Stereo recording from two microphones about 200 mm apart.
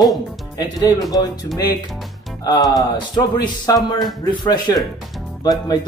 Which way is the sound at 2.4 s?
20° left (ahead or behind).